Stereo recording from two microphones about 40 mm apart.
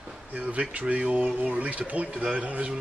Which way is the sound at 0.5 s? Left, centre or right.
Right.